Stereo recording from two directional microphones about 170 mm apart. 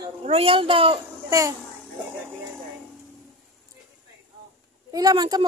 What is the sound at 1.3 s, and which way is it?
Speech, 20° right (ahead or behind).